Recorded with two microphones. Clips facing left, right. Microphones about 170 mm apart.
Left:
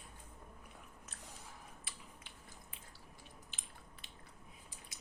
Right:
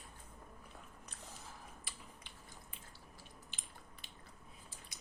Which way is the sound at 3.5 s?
Centre (ahead or behind).